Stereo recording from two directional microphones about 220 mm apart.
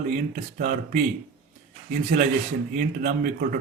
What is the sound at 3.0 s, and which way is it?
Speech, 40° right (ahead or behind).